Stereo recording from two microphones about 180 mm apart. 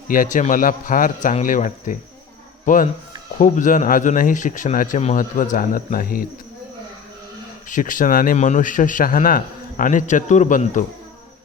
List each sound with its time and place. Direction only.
0.1 s speech: 50° left (ahead or behind)
7.7 s speech: 45° left (ahead or behind)